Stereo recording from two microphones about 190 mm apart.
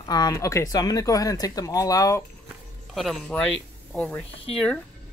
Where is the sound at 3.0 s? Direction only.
Centre (ahead or behind).